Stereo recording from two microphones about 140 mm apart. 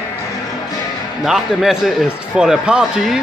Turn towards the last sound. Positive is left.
turn(degrees=-5)  # may be behind; listen again after turning